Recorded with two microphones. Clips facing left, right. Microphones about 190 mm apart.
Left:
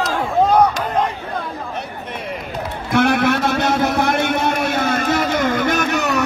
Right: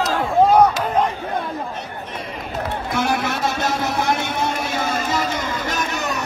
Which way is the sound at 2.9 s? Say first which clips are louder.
Left 7 dB; 65° left (ahead or behind).